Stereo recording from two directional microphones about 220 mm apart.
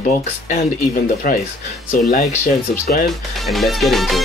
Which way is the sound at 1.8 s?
40° left (ahead or behind).